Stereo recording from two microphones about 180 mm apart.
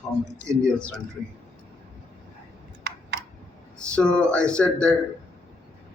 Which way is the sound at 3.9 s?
5° left (ahead or behind).